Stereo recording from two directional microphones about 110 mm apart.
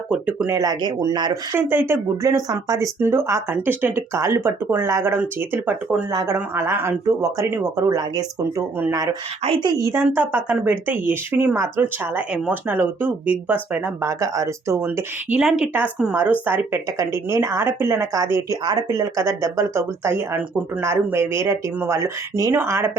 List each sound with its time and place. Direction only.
0.1 s speech: 10° right (ahead or behind)
0.5 s speech: 35° right (ahead or behind)
1.5 s speech: 20° right (ahead or behind)
2.2 s speech: 35° right (ahead or behind)
3.0 s speech: 20° right (ahead or behind)
6.1 s speech: 30° right (ahead or behind)
9.6 s speech: 35° right (ahead or behind)
9.9 s speech: 20° right (ahead or behind)
14.0 s speech: 30° right (ahead or behind)
15.4 s speech: 10° right (ahead or behind); by 18.3 s 25° right (ahead or behind)
18.6 s speech: 35° right (ahead or behind)